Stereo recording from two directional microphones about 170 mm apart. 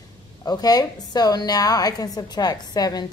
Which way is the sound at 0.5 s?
25° left (ahead or behind).